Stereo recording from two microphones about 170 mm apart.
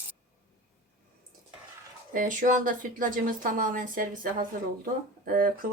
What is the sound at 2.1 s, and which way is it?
A woman's voice, 50° right (ahead or behind).